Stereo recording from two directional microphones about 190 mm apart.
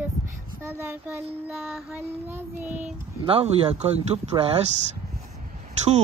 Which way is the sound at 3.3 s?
30° right (ahead or behind).